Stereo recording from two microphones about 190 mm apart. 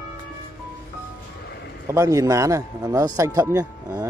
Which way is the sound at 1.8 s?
15° right (ahead or behind).